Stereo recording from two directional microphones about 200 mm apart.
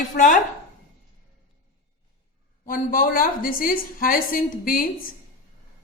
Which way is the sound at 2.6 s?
45° left (ahead or behind).